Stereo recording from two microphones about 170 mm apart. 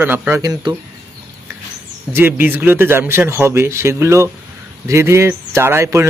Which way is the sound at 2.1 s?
10° right (ahead or behind).